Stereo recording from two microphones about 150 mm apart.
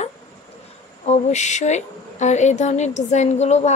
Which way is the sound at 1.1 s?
50° left (ahead or behind).